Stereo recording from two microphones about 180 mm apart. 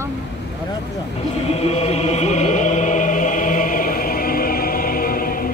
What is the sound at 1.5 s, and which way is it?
Music, 35° left (ahead or behind).